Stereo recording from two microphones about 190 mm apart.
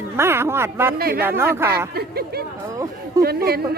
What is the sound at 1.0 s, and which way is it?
Speech, 50° right (ahead or behind).